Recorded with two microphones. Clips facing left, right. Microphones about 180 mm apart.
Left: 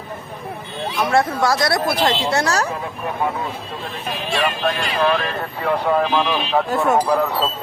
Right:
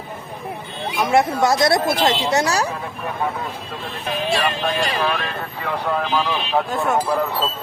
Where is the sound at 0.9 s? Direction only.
20° right (ahead or behind).